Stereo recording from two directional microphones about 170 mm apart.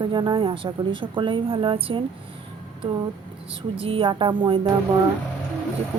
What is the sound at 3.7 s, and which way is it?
Speech, 30° right (ahead or behind).